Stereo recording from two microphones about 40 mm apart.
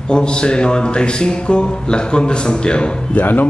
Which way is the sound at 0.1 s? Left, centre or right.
Left.